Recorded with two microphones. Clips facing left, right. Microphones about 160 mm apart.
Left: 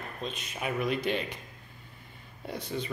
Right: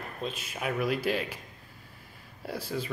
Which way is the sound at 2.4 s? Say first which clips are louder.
Right 1 dB; 5° right (ahead or behind).